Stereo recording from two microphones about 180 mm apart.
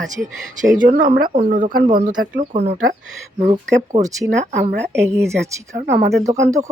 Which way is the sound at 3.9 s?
20° right (ahead or behind).